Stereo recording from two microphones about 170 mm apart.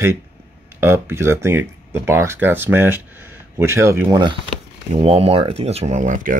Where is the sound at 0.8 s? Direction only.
15° right (ahead or behind).